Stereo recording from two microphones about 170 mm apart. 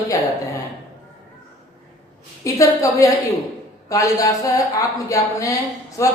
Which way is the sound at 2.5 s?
20° left (ahead or behind).